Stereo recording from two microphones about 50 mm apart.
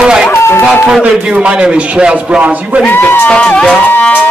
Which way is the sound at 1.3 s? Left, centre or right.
Centre.